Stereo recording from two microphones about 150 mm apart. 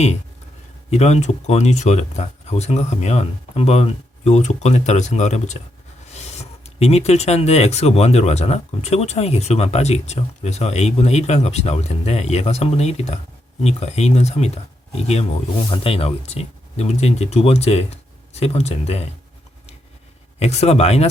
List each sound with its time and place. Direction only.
0.9 s speech: 45° left (ahead or behind)
15.7 s speech: 40° left (ahead or behind)
20.4 s speech: 45° left (ahead or behind)